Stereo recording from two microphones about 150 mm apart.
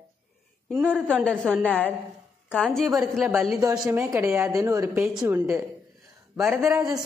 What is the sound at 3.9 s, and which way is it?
A woman's voice, 20° right (ahead or behind).